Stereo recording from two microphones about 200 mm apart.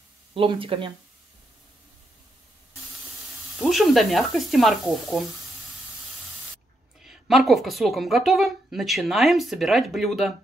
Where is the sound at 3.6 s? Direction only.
Centre (ahead or behind).